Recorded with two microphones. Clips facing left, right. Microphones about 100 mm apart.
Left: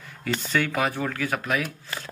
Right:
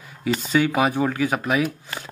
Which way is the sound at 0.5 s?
15° right (ahead or behind).